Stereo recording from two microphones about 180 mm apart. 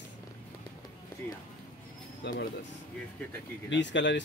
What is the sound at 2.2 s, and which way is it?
Speech, 75° left (ahead or behind).